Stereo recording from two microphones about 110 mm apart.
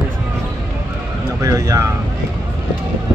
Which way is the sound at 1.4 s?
30° right (ahead or behind).